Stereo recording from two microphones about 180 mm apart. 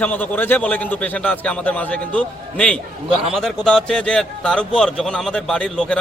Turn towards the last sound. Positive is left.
turn(degrees=5)  # may be behind; listen again after turning